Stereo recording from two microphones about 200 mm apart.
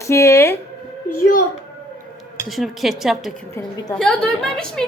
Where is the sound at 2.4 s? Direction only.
Centre (ahead or behind).